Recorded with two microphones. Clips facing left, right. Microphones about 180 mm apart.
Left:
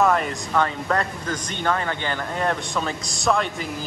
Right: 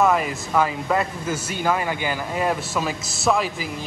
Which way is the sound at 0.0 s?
5° right (ahead or behind).